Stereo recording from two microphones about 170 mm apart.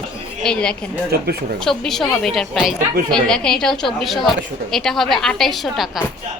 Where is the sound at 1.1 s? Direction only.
70° right (ahead or behind).